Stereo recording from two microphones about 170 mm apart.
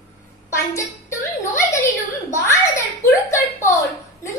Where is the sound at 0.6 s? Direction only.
15° left (ahead or behind).